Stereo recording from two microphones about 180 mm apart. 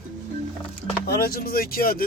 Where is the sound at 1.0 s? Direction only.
60° left (ahead or behind).